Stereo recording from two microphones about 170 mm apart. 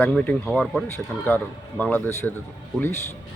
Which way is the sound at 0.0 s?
5° left (ahead or behind).